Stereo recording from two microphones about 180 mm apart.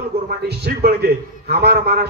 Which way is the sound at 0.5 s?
60° right (ahead or behind).